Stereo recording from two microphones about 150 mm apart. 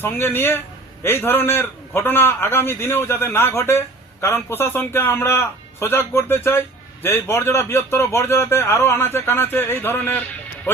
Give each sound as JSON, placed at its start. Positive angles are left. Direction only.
{"t": 0.0, "sound": "a man's voice", "side_deg": 15}